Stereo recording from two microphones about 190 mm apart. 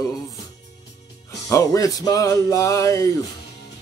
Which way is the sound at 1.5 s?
15° left (ahead or behind).